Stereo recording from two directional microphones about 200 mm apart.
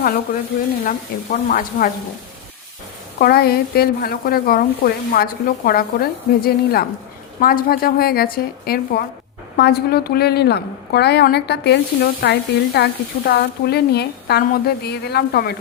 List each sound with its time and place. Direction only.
0.9 s speech: 45° left (ahead or behind)
3.2 s a woman's voice: 50° left (ahead or behind)